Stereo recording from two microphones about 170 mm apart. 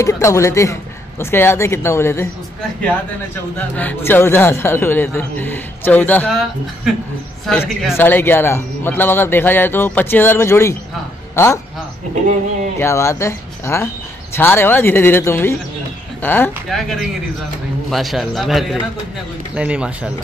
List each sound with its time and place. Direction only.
0.0 s a man's voice: 15° left (ahead or behind)
3.5 s a man's voice: 10° left (ahead or behind)
8.0 s a man's voice: 10° left (ahead or behind)
12.7 s a man's voice: 15° left (ahead or behind)
16.6 s a man's voice: centre (ahead or behind)